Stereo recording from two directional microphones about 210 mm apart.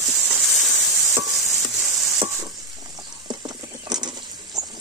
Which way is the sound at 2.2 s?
20° right (ahead or behind).